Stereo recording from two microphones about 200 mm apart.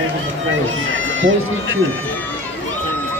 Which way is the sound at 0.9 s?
70° right (ahead or behind).